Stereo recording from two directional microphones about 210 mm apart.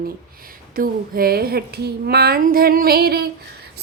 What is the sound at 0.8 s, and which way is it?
Female singing, 45° right (ahead or behind).